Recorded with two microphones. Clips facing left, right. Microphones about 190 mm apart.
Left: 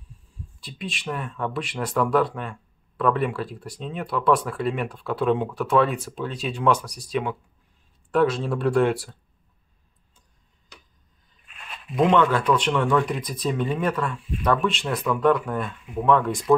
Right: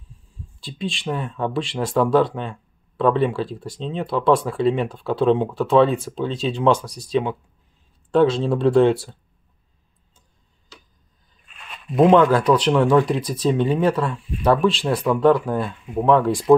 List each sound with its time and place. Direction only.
0.6 s speech: 25° right (ahead or behind)
12.0 s speech: 35° right (ahead or behind)